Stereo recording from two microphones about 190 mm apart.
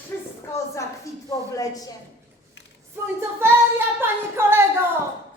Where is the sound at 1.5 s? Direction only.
20° left (ahead or behind).